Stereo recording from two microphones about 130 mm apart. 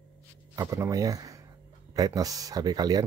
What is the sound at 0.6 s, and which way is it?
Speech, 25° right (ahead or behind).